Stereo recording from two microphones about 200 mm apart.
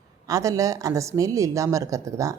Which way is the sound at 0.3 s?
15° right (ahead or behind).